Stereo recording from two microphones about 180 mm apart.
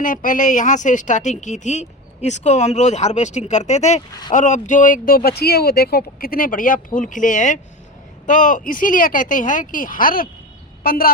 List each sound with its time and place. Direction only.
0.0 s a woman's voice: 50° left (ahead or behind)